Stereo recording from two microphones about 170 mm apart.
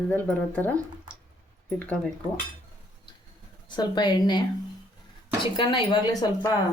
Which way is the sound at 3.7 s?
25° left (ahead or behind).